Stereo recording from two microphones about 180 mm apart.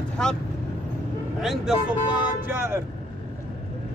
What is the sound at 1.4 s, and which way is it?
Speech, 5° right (ahead or behind).